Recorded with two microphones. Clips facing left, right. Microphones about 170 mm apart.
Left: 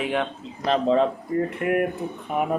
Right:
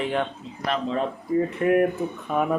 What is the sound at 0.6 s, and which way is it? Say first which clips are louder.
Speech: left 6 dB; 30° left (ahead or behind).